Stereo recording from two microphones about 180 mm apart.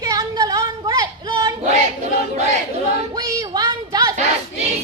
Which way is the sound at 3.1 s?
20° right (ahead or behind).